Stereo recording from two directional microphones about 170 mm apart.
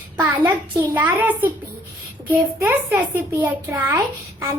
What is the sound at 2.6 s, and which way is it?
A child's voice, 15° right (ahead or behind).